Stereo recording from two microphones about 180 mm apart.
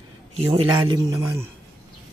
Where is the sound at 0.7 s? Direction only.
20° right (ahead or behind).